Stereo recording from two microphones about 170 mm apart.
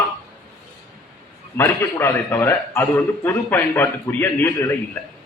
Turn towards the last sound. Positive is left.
turn(degrees=15)  # may be behind; listen again after turning